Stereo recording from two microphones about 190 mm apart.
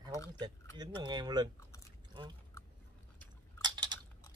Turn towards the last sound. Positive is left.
turn(degrees=-20)  # may be behind; listen again after turning